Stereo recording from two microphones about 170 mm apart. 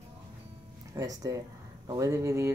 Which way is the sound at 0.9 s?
20° right (ahead or behind).